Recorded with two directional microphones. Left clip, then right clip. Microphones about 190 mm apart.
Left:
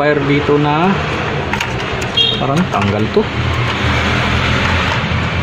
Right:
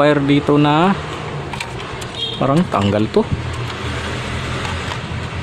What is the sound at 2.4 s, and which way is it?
Speech, 50° right (ahead or behind).